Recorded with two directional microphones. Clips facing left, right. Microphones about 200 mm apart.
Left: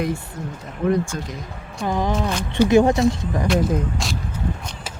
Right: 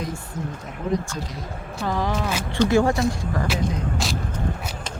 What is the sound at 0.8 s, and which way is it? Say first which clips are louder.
Speech: left 5 dB; 60° left (ahead or behind).